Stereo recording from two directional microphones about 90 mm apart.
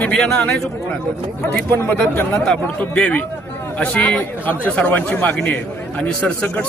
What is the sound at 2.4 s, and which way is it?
A man's voice, 10° left (ahead or behind).